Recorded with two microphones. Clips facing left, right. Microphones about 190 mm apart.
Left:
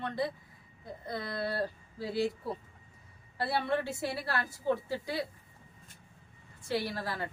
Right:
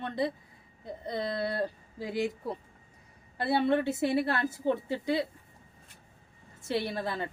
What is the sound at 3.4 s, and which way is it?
Speech, 20° right (ahead or behind).